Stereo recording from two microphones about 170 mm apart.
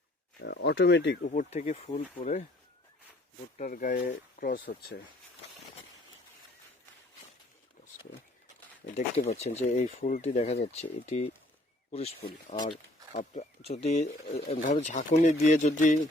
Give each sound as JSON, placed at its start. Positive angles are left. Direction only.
{"t": 0.4, "sound": "speech", "side_deg": 90}
{"t": 1.3, "sound": "speech", "side_deg": 45}
{"t": 3.6, "sound": "speech", "side_deg": 50}
{"t": 9.0, "sound": "speech", "side_deg": 40}